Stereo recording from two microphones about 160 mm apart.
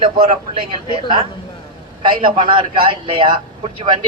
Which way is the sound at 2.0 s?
35° right (ahead or behind).